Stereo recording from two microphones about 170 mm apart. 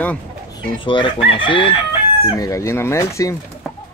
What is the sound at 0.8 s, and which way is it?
Speech, 30° left (ahead or behind).